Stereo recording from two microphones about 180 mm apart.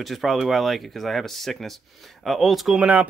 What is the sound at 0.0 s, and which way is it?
A man's voice, centre (ahead or behind).